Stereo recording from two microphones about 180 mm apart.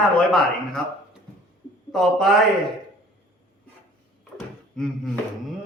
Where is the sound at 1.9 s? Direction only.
Centre (ahead or behind).